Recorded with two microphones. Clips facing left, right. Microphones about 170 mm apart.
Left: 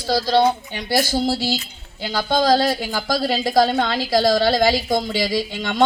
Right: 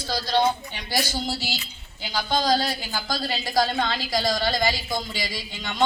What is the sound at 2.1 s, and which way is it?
A woman's voice, 60° left (ahead or behind).